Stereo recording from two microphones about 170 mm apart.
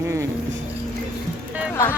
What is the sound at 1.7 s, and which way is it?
Music, 15° left (ahead or behind).